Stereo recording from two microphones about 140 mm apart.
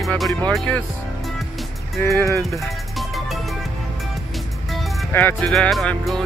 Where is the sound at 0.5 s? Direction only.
10° left (ahead or behind).